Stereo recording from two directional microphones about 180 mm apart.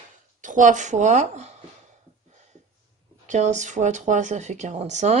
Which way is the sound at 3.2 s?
40° right (ahead or behind).